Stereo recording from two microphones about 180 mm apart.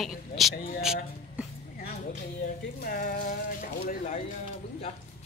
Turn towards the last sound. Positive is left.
turn(degrees=40)  # may be behind; listen again after turning